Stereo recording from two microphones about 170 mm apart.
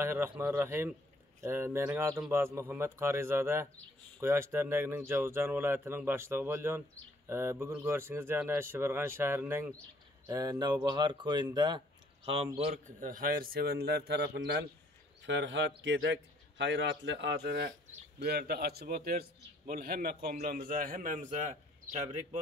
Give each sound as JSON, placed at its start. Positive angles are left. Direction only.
{"t": 0.0, "sound": "speech", "side_deg": -15}
{"t": 12.5, "sound": "a man's voice", "side_deg": -45}
{"t": 15.2, "sound": "a man's voice", "side_deg": -90}
{"t": 18.2, "sound": "a man's voice", "side_deg": -65}